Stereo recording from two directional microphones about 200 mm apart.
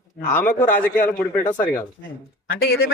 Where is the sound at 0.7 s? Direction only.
45° left (ahead or behind).